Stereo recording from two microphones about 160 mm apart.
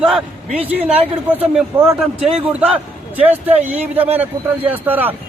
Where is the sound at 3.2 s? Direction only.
10° right (ahead or behind).